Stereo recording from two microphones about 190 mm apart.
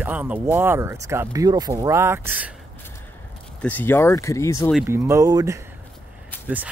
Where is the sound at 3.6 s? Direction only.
10° left (ahead or behind).